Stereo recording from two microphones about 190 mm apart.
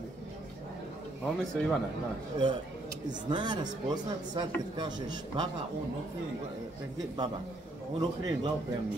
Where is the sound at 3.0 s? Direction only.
25° right (ahead or behind).